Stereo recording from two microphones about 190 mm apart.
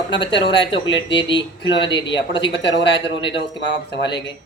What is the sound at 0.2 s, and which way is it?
Speech, 25° left (ahead or behind).